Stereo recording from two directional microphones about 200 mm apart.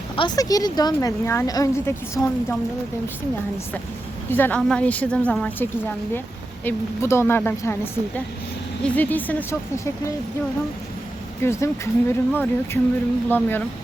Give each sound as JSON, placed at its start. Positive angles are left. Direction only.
{"t": 0.2, "sound": "speech", "side_deg": 20}
{"t": 4.3, "sound": "speech", "side_deg": 10}
{"t": 6.7, "sound": "speech", "side_deg": 15}
{"t": 11.4, "sound": "speech", "side_deg": 10}